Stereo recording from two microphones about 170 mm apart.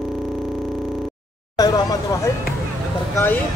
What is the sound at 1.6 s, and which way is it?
Speech, 20° left (ahead or behind).